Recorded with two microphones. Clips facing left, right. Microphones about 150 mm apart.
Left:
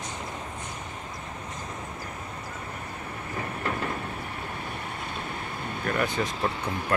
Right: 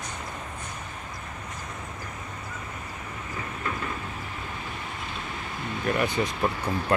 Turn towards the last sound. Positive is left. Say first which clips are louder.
# right 2 dB
turn(degrees=-10)  # may be behind; listen again after turning